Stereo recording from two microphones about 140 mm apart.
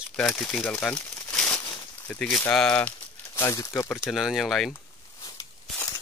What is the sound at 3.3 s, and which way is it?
Speech, 20° left (ahead or behind).